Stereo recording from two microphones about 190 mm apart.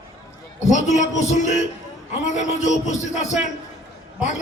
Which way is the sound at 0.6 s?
40° left (ahead or behind).